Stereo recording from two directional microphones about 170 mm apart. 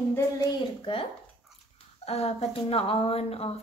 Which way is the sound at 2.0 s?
35° left (ahead or behind).